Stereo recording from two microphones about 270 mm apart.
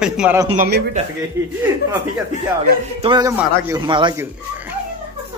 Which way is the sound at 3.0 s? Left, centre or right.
Centre.